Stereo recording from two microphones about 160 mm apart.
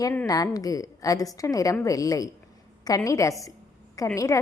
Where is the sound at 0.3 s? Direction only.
20° left (ahead or behind).